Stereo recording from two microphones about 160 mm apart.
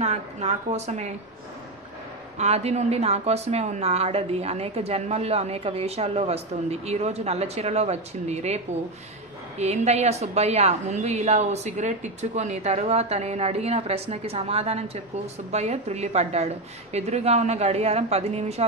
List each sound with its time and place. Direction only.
0.0 s a woman's voice: 45° right (ahead or behind)
2.3 s a woman's voice: 40° right (ahead or behind)
9.6 s a woman's voice: 45° right (ahead or behind)